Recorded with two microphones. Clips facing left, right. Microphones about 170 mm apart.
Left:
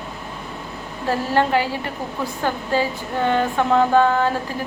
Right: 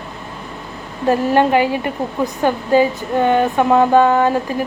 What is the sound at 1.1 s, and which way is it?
A woman's voice, 15° right (ahead or behind).